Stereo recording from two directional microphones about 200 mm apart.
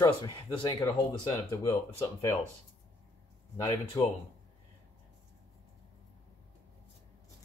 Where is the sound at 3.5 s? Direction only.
20° left (ahead or behind).